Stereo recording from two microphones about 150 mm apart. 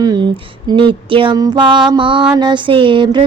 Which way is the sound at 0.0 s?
25° right (ahead or behind).